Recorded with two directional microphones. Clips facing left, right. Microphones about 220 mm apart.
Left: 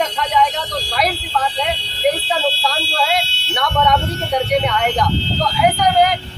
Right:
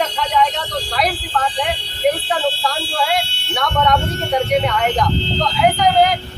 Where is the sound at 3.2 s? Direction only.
50° right (ahead or behind).